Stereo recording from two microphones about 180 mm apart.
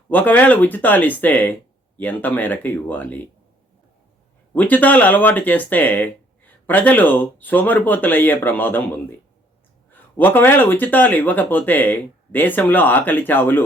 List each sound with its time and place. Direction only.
0.1 s speech: 10° left (ahead or behind)
4.5 s speech: 10° left (ahead or behind)